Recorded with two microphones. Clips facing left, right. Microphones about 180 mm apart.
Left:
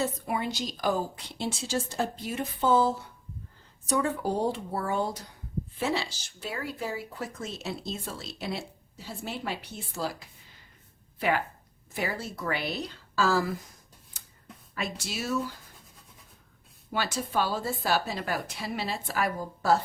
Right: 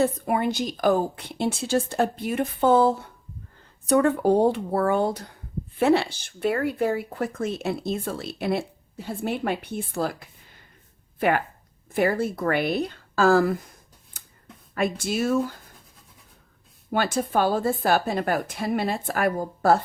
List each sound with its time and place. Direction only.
0.0 s a woman's voice: 55° right (ahead or behind)
14.1 s a sound: 50° right (ahead or behind)
14.8 s a woman's voice: 55° right (ahead or behind)
16.9 s a woman's voice: 50° right (ahead or behind)